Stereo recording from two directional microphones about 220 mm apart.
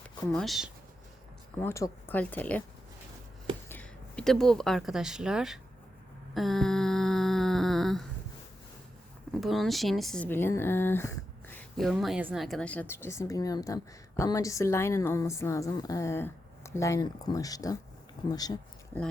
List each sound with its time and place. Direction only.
0.3 s speech: centre (ahead or behind)
1.6 s a woman's voice: 10° left (ahead or behind)
3.7 s speech: 5° left (ahead or behind)
6.3 s a sound: centre (ahead or behind)
9.4 s a woman's voice: centre (ahead or behind); by 18.5 s 15° left (ahead or behind)